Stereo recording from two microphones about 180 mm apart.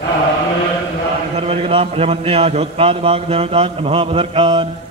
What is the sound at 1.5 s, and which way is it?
A man's voice, 30° right (ahead or behind).